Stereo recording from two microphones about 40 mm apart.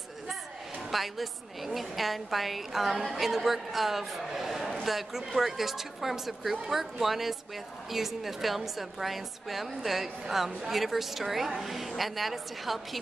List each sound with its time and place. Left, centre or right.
0.9 s a woman's voice: centre